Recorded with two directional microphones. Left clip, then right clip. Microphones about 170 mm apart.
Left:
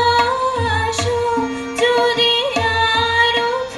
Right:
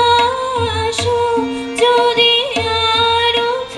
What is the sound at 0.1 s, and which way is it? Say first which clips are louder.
Music: right 2 dB; 30° right (ahead or behind).